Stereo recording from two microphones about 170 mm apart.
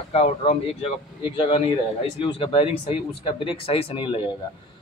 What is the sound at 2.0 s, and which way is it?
Speech, 35° left (ahead or behind).